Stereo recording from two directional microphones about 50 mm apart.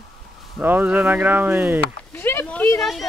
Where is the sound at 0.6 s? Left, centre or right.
Right.